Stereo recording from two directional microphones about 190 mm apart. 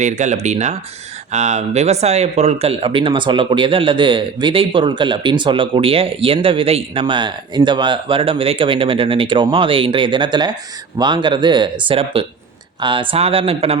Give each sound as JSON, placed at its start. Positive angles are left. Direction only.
{"t": 0.0, "sound": "speech", "side_deg": -40}